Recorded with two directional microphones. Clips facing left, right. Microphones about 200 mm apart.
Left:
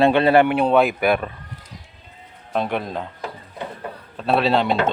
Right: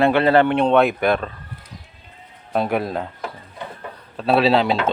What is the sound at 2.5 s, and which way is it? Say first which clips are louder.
Speech: right 3 dB; 5° right (ahead or behind).